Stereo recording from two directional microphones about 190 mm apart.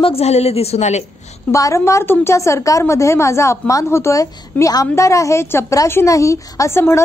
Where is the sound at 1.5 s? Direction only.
15° left (ahead or behind).